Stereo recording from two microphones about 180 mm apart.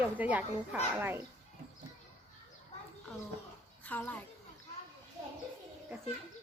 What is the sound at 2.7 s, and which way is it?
Children playing, 35° left (ahead or behind).